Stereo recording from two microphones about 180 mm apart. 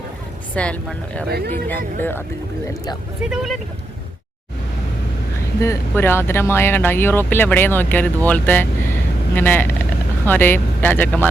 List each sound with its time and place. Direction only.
0.5 s speech: 5° left (ahead or behind)
1.3 s speech: 60° right (ahead or behind)
1.7 s speech: 10° left (ahead or behind)
3.2 s speech: centre (ahead or behind)
5.5 s speech: 15° left (ahead or behind)